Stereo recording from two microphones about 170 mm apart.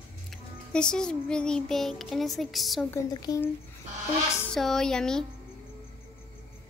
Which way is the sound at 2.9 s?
20° left (ahead or behind).